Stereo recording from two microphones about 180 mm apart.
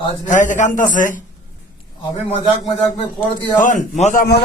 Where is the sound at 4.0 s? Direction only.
40° left (ahead or behind).